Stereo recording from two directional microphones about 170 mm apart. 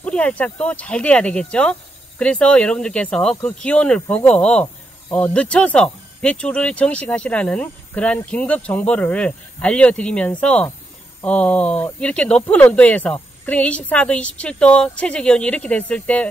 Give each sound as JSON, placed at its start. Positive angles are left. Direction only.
{"t": 0.0, "sound": "speech", "side_deg": 5}